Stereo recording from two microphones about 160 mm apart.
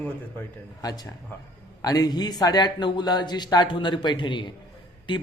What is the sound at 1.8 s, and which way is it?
A man's voice, 25° left (ahead or behind).